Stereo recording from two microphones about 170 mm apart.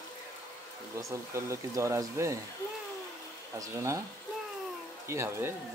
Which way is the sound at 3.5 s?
20° right (ahead or behind).